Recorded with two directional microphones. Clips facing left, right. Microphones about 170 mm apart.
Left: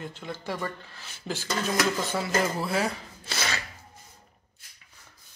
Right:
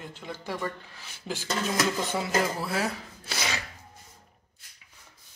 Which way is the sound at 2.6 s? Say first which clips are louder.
Left 2 dB; 5° right (ahead or behind).